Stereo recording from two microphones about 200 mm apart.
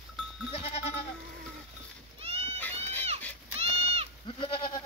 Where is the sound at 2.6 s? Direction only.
10° left (ahead or behind).